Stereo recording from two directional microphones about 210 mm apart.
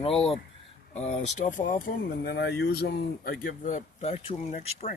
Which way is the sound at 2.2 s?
50° left (ahead or behind).